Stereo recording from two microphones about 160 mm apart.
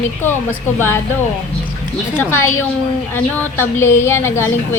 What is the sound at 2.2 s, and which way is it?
A woman's voice, 15° left (ahead or behind).